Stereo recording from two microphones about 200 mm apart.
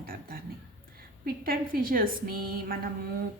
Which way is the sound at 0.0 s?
45° right (ahead or behind).